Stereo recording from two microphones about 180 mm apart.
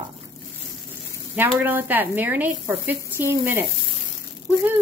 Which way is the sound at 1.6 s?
10° right (ahead or behind).